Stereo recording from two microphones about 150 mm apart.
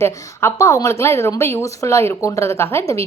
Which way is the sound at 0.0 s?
20° left (ahead or behind).